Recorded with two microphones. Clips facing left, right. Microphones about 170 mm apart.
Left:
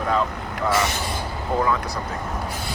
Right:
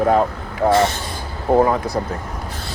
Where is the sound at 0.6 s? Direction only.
50° right (ahead or behind).